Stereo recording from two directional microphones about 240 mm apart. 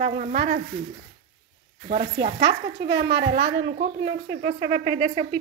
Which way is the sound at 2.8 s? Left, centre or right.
Centre.